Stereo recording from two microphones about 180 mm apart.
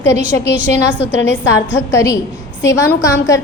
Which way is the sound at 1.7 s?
15° left (ahead or behind).